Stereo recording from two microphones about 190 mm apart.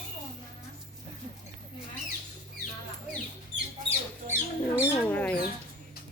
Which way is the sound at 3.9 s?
15° right (ahead or behind).